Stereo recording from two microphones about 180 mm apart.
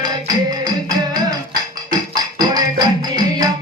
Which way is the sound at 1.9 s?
20° right (ahead or behind).